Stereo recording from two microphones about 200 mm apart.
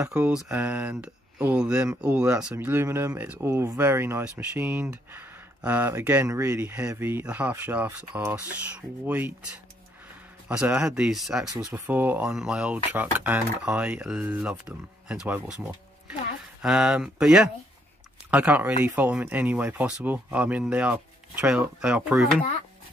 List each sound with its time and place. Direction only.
0.0 s speech: 5° right (ahead or behind)
10.5 s speech: 5° right (ahead or behind)
11.4 s speech: 15° right (ahead or behind)
16.6 s speech: 5° right (ahead or behind)